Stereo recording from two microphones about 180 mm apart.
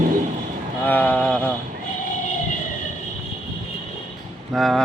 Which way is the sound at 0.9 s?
10° left (ahead or behind).